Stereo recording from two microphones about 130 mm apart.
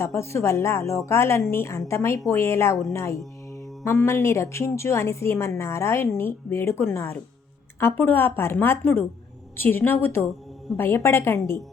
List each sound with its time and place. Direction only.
0.0 s a woman's voice: 20° left (ahead or behind)